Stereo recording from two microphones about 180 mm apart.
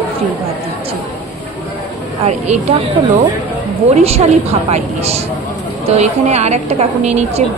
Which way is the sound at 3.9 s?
35° right (ahead or behind).